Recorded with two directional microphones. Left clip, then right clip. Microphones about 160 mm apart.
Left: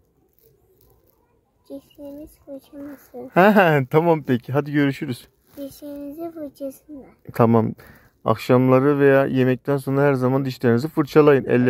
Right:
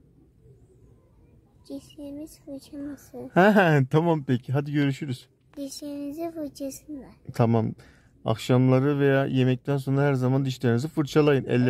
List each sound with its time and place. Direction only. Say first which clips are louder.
2.5 s speech: left 2 dB; 20° right (ahead or behind)
5.7 s a child's voice: left 1 dB; 50° right (ahead or behind)
5.9 s speech: even; 15° right (ahead or behind)